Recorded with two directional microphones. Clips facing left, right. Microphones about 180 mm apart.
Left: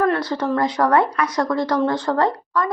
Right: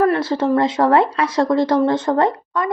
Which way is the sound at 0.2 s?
25° right (ahead or behind).